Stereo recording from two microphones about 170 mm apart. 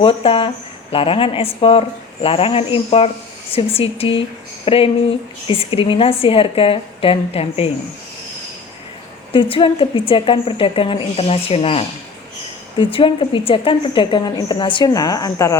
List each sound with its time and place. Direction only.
0.0 s a woman's voice: 30° left (ahead or behind)
9.3 s a woman's voice: 30° left (ahead or behind)